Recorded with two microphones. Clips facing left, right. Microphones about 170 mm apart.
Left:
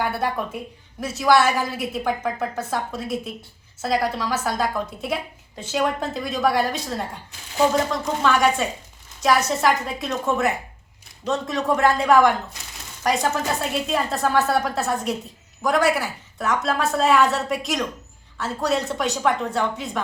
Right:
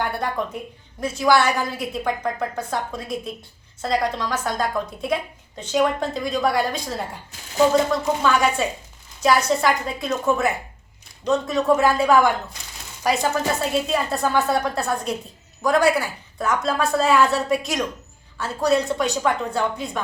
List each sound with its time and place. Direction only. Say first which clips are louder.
0.9 s a woman's voice: even; centre (ahead or behind)
8.2 s a woman's voice: left 4 dB; centre (ahead or behind)